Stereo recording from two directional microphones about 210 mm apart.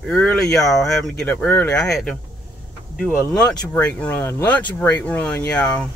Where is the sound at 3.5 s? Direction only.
15° left (ahead or behind).